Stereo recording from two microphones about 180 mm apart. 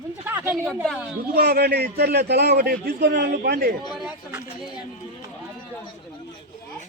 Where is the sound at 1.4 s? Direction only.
60° right (ahead or behind).